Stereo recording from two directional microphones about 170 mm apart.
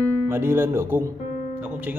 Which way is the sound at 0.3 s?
15° right (ahead or behind).